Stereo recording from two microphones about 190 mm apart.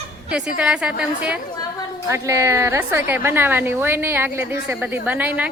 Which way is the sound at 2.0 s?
15° right (ahead or behind).